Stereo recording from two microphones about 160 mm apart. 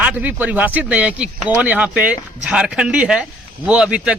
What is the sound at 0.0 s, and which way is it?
Speech, 10° right (ahead or behind).